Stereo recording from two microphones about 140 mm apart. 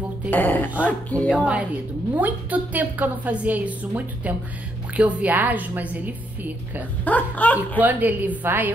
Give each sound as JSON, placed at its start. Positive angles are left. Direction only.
{"t": 0.3, "sound": "speech", "side_deg": 10}
{"t": 1.3, "sound": "a woman's voice", "side_deg": -10}
{"t": 7.1, "sound": "speech", "side_deg": 10}
{"t": 7.8, "sound": "a woman's voice", "side_deg": -10}